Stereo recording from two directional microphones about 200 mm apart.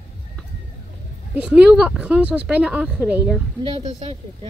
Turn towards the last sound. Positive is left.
turn(degrees=-30)  # may be behind; listen again after turning